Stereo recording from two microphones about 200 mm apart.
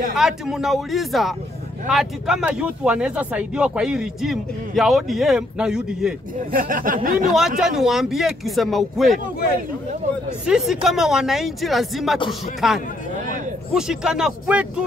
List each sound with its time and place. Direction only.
0.1 s speech: 5° right (ahead or behind)
6.5 s speech: 45° right (ahead or behind)
7.3 s speech: centre (ahead or behind)
10.4 s speech: 5° right (ahead or behind)